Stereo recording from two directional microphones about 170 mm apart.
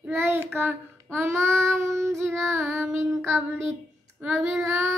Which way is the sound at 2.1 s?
Centre (ahead or behind).